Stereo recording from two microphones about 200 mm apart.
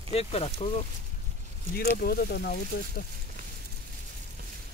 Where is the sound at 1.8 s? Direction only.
50° left (ahead or behind).